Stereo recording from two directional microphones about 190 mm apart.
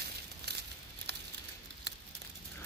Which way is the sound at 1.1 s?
65° right (ahead or behind).